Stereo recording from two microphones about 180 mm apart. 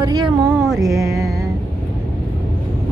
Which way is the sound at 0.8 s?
20° right (ahead or behind).